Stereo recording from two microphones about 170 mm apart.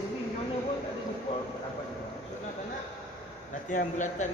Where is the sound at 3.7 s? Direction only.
45° left (ahead or behind).